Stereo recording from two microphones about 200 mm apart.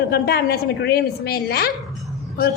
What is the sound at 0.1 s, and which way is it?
A woman's voice, 50° left (ahead or behind).